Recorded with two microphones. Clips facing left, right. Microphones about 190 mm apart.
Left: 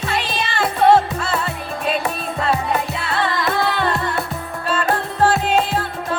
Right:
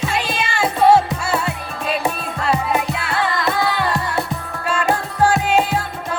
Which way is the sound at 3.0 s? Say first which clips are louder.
Even; centre (ahead or behind).